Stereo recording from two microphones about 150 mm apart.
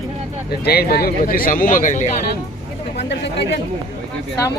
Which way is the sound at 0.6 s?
90° left.